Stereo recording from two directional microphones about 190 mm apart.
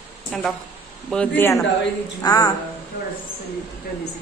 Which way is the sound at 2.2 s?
20° left (ahead or behind).